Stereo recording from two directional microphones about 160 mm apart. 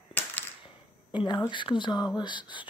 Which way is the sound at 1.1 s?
30° left (ahead or behind).